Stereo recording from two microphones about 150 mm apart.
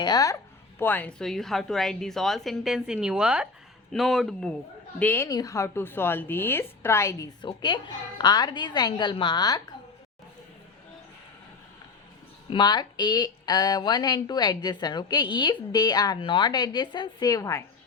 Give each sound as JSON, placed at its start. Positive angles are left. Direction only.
{"t": 0.0, "sound": "speech", "side_deg": 25}
{"t": 0.8, "sound": "a woman's voice", "side_deg": 10}
{"t": 5.3, "sound": "a woman's voice", "side_deg": 25}
{"t": 12.5, "sound": "speech", "side_deg": 30}